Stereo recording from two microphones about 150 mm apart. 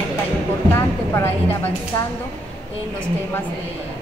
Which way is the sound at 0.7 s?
15° left (ahead or behind).